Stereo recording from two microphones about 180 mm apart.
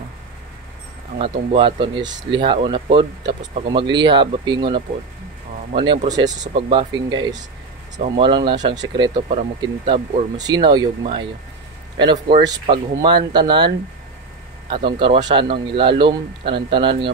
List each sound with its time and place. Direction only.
1.1 s a man's voice: 30° right (ahead or behind)